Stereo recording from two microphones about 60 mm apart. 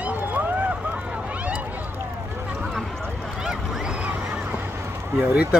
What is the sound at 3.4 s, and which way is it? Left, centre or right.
Boat, centre.